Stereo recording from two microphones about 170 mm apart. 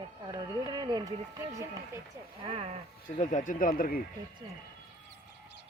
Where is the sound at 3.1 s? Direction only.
45° left (ahead or behind).